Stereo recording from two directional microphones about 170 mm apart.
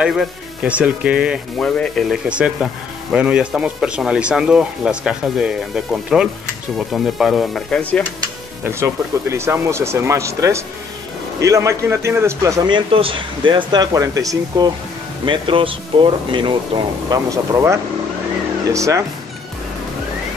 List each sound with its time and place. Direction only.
0.0 s speech: 5° right (ahead or behind)
8.6 s a man's voice: 15° right (ahead or behind)
15.2 s a man's voice: 30° right (ahead or behind)